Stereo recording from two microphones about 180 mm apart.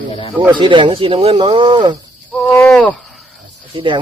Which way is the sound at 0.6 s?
25° right (ahead or behind).